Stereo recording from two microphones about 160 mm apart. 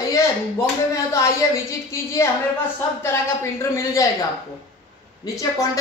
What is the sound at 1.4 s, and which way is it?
Speech, 20° left (ahead or behind).